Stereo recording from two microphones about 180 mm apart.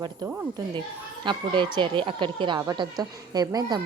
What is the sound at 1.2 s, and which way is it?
A woman's voice, 25° right (ahead or behind).